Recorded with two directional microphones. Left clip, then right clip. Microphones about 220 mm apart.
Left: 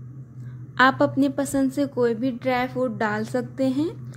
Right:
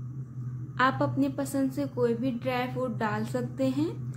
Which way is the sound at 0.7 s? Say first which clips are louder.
Left 7 dB; 35° left (ahead or behind).